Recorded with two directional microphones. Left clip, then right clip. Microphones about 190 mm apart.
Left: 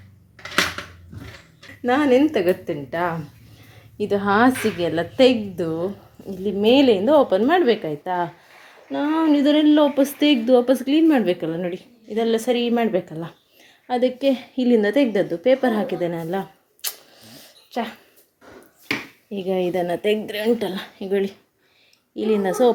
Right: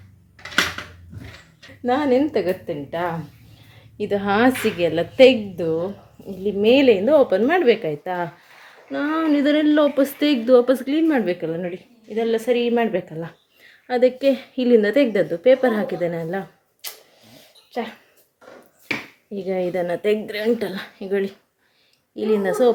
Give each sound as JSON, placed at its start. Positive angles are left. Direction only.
{"t": 1.8, "sound": "a woman's voice", "side_deg": 10}
{"t": 3.9, "sound": "a woman's voice", "side_deg": 0}
{"t": 16.8, "sound": "a sound", "side_deg": 15}
{"t": 19.3, "sound": "a woman's voice", "side_deg": 5}